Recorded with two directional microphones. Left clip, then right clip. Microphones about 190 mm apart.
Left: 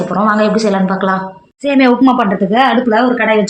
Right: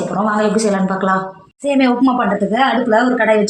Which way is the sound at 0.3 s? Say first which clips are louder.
Left 3 dB; 25° left (ahead or behind).